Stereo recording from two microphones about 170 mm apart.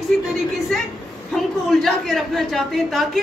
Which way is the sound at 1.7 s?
Centre (ahead or behind).